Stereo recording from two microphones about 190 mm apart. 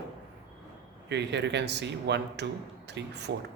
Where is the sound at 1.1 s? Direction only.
65° right (ahead or behind).